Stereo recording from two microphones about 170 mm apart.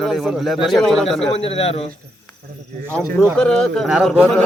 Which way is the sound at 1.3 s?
35° left (ahead or behind).